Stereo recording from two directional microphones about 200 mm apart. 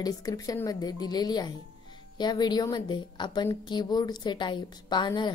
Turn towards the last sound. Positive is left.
turn(degrees=20)  # may be behind; listen again after turning